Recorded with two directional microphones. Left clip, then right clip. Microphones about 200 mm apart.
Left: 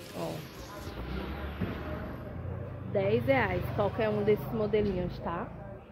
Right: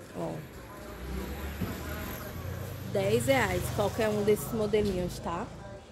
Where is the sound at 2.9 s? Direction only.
20° right (ahead or behind).